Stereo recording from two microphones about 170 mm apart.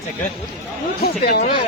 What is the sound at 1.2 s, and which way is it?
Speech, 60° left (ahead or behind).